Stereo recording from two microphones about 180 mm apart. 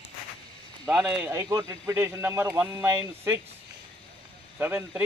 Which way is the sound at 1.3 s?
20° right (ahead or behind).